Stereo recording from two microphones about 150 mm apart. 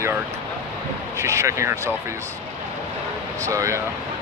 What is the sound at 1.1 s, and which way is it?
Speech, 20° right (ahead or behind).